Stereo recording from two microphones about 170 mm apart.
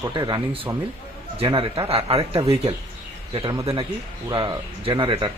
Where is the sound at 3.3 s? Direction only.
30° right (ahead or behind).